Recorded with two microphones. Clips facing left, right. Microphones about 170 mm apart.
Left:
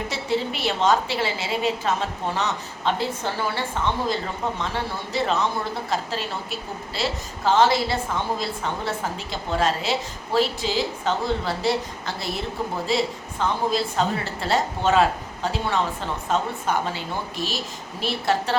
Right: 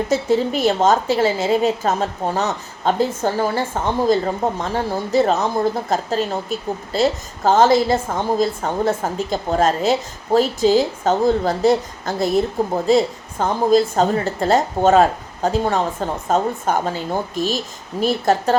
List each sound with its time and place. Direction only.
0.1 s speech: 45° right (ahead or behind)